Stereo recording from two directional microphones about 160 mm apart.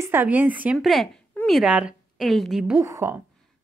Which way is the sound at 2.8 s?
15° right (ahead or behind).